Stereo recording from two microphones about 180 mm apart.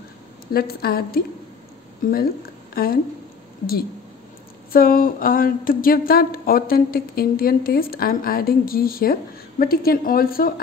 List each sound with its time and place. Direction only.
0.5 s a woman's voice: 60° left (ahead or behind)
2.7 s speech: 55° left (ahead or behind)
4.7 s a woman's voice: 55° left (ahead or behind)